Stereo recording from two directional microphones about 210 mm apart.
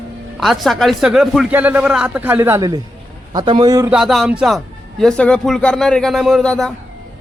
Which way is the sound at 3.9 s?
Centre (ahead or behind).